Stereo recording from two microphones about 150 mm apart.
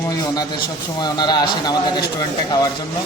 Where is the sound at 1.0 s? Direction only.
30° left (ahead or behind).